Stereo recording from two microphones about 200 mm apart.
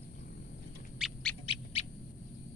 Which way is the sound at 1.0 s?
Centre (ahead or behind).